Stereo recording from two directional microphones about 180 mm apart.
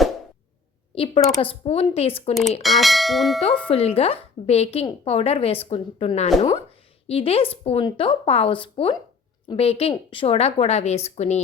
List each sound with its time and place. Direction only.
0.9 s a woman's voice: 30° left (ahead or behind)
2.6 s bell: centre (ahead or behind)
3.7 s a woman's voice: 35° left (ahead or behind)